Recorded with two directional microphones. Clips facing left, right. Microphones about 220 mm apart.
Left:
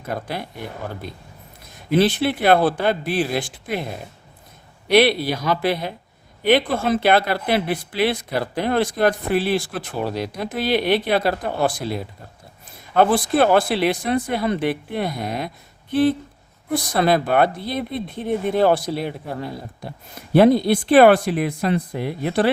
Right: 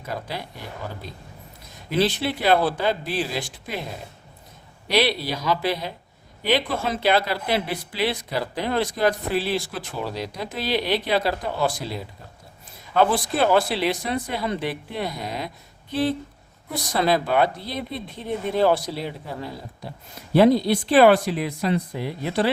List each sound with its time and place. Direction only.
2.0 s speech: 55° left (ahead or behind)
4.9 s speech: 55° left (ahead or behind)
13.1 s speech: 55° left (ahead or behind)